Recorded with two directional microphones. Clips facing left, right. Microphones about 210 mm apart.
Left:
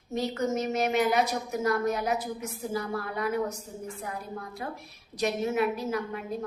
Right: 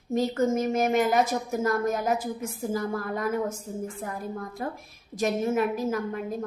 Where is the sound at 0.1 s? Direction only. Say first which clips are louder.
Right 4 dB; 45° right (ahead or behind).